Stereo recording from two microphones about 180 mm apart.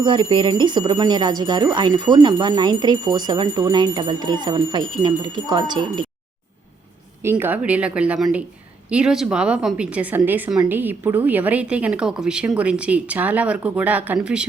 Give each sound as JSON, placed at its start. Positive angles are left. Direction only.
{"t": 0.0, "sound": "speech", "side_deg": -25}
{"t": 7.2, "sound": "a woman's voice", "side_deg": -15}